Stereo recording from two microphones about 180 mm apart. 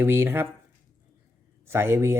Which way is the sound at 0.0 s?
15° right (ahead or behind).